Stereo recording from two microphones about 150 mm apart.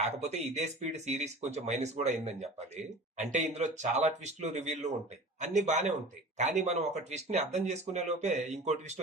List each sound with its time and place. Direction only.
0.0 s speech: 45° right (ahead or behind)